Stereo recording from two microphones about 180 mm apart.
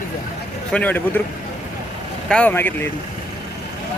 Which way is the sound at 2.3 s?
10° left (ahead or behind).